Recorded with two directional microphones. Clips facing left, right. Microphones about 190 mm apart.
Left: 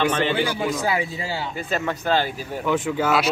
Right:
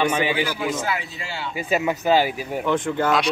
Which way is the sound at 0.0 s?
10° right (ahead or behind).